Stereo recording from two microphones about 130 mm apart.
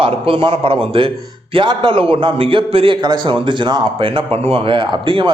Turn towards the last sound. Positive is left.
turn(degrees=-40)  # may be behind; listen again after turning